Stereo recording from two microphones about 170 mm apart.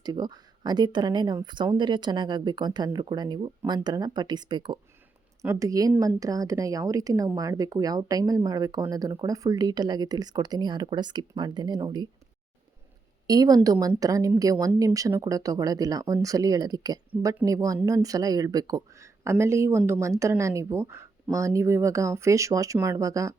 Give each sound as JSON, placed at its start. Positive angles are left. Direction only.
{"t": 0.0, "sound": "a woman's voice", "side_deg": -25}
{"t": 13.2, "sound": "a woman's voice", "side_deg": -20}